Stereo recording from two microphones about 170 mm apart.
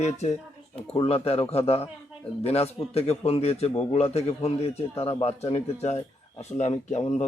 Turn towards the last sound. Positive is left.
turn(degrees=40)  # may be behind; listen again after turning